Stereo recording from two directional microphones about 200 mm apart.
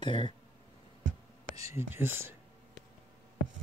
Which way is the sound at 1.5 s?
15° right (ahead or behind).